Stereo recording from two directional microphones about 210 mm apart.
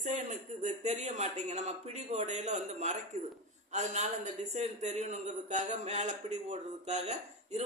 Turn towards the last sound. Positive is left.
turn(degrees=-30)  # may be behind; listen again after turning